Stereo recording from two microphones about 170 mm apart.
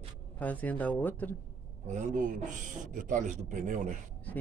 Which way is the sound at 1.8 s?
50° right (ahead or behind).